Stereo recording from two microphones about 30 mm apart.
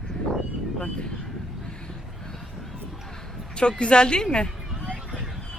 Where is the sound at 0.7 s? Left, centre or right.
Left.